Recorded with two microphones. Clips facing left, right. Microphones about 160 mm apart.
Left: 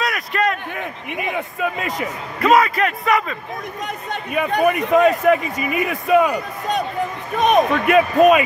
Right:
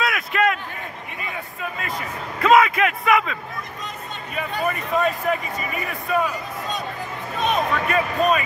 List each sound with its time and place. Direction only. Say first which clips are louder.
0.0 s a sound: even; centre (ahead or behind)
1.1 s speech: left 11 dB; 70° left (ahead or behind)
2.4 s a man's voice: left 1 dB; centre (ahead or behind)
3.8 s speech: left 6 dB; 70° left (ahead or behind)
5.9 s speech: left 7 dB; 90° left